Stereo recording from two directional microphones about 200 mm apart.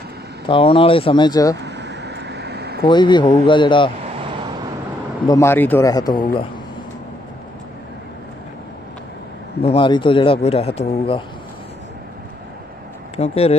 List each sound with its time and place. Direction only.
0.5 s a man's voice: 25° left (ahead or behind)
1.6 s a sound: 60° right (ahead or behind)
2.8 s a man's voice: 20° left (ahead or behind)
5.2 s speech: 15° left (ahead or behind)
9.6 s a man's voice: 25° left (ahead or behind)
13.1 s speech: 30° left (ahead or behind)